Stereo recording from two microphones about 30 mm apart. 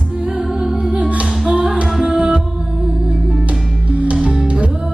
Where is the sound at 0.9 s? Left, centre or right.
Right.